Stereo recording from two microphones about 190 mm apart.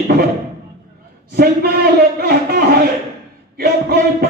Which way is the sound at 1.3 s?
55° right (ahead or behind).